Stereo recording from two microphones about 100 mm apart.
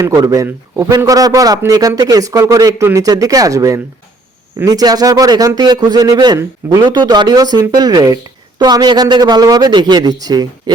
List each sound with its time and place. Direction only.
0.4 s speech: 30° right (ahead or behind)